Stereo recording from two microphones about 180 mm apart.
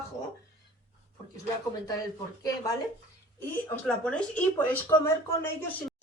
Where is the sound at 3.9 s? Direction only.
5° left (ahead or behind).